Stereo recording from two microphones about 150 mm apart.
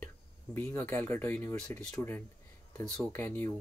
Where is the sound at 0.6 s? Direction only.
15° left (ahead or behind).